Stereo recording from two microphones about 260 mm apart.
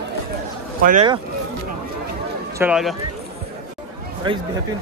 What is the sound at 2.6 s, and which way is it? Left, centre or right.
Speech, centre.